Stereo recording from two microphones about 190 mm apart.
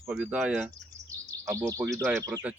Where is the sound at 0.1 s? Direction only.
5° right (ahead or behind).